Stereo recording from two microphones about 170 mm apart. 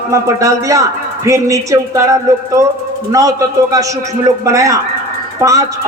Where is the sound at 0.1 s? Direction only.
20° right (ahead or behind).